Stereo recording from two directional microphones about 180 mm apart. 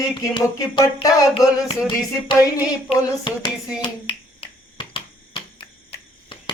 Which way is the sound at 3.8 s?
30° left (ahead or behind).